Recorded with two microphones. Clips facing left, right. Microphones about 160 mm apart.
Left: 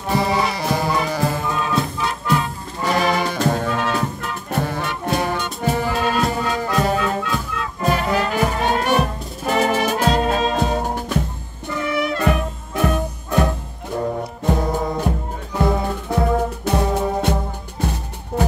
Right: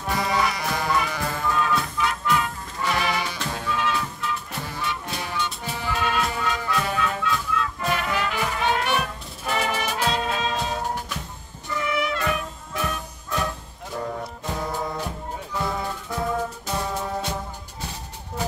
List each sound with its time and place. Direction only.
0.1 s music: 30° left (ahead or behind)
1.4 s music: 20° left (ahead or behind); by 11.2 s 50° left (ahead or behind)
11.8 s music: 40° left (ahead or behind)
16.1 s music: 65° left (ahead or behind)